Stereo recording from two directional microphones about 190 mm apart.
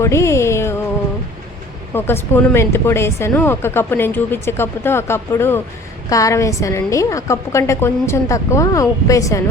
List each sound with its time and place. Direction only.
0.0 s music: 15° left (ahead or behind)
2.0 s speech: 10° left (ahead or behind)